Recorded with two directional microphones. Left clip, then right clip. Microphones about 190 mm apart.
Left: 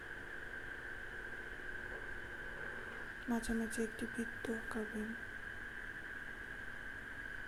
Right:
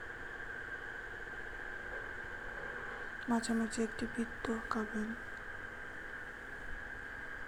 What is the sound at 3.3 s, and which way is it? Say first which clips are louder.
Speech: right 4 dB; 10° right (ahead or behind).